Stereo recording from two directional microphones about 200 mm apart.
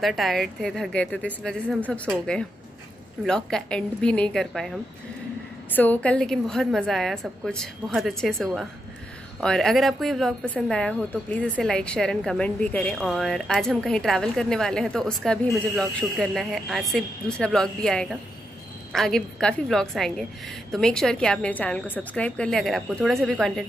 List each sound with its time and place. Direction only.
0.0 s a woman's voice: centre (ahead or behind)